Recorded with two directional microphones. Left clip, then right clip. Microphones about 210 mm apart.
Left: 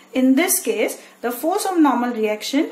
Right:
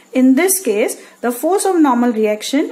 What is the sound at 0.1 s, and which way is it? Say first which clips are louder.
A woman's voice: right 4 dB; 50° right (ahead or behind).